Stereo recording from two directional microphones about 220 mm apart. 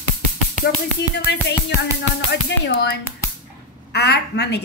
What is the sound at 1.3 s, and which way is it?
A woman's voice, 50° left (ahead or behind).